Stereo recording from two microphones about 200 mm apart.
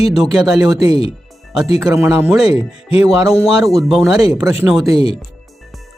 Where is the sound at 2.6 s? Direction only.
30° left (ahead or behind).